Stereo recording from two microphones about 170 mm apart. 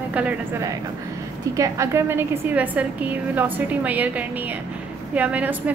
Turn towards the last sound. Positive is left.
turn(degrees=-10)  # may be behind; listen again after turning